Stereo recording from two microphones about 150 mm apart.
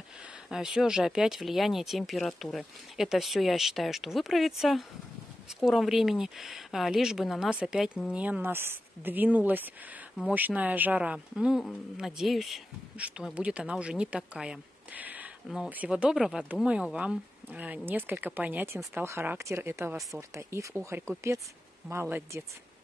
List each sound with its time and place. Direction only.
0.5 s speech: 5° right (ahead or behind)